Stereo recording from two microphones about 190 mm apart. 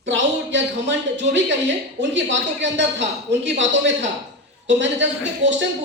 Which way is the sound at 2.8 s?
70° right (ahead or behind).